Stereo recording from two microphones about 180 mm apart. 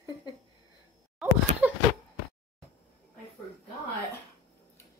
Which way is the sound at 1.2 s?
Centre (ahead or behind).